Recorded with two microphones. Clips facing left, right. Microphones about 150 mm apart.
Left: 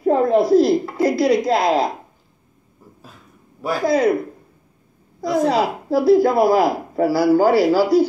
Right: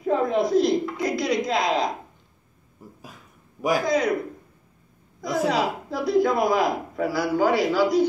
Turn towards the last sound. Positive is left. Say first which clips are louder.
# left 6 dB
turn(degrees=35)  # may be behind; listen again after turning